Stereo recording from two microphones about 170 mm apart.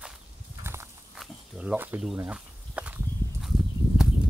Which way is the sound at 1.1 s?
5° right (ahead or behind).